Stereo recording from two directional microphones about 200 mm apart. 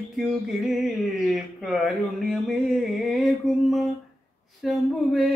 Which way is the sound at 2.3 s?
Centre (ahead or behind).